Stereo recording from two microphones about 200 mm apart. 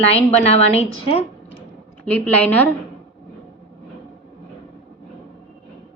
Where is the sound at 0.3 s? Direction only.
30° left (ahead or behind).